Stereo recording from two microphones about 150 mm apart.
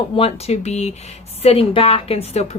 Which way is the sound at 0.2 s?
45° left (ahead or behind).